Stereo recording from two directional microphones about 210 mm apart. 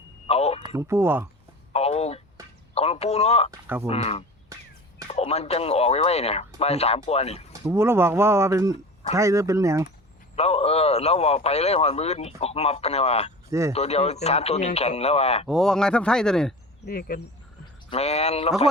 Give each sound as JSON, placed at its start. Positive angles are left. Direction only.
{"t": 0.3, "sound": "speech", "side_deg": 30}
{"t": 0.6, "sound": "speech", "side_deg": -15}
{"t": 1.7, "sound": "speech", "side_deg": 30}
{"t": 7.6, "sound": "speech", "side_deg": -10}
{"t": 10.3, "sound": "speech", "side_deg": 30}
{"t": 13.5, "sound": "speech", "side_deg": -15}
{"t": 13.7, "sound": "speech", "side_deg": 30}
{"t": 15.4, "sound": "speech", "side_deg": 0}
{"t": 16.8, "sound": "speech", "side_deg": 45}
{"t": 17.8, "sound": "speech", "side_deg": 30}